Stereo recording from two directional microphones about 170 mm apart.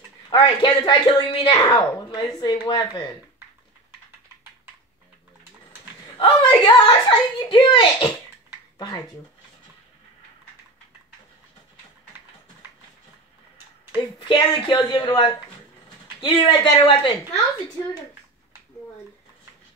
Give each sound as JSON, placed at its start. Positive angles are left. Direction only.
{"t": 0.3, "sound": "a woman's voice", "side_deg": 25}
{"t": 6.1, "sound": "a woman's voice", "side_deg": 30}
{"t": 14.2, "sound": "a woman's voice", "side_deg": 25}